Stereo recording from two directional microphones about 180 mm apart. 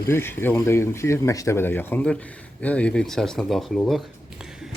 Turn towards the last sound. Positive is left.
turn(degrees=0)  # may be behind; listen again after turning